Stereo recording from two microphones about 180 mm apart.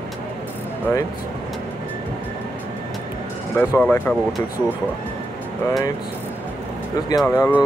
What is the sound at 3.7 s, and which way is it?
Speech, 10° left (ahead or behind).